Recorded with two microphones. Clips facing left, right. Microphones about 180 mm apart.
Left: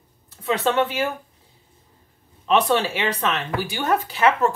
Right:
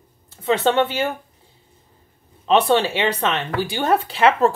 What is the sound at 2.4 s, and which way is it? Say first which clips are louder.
Speech: right 3 dB; 25° right (ahead or behind).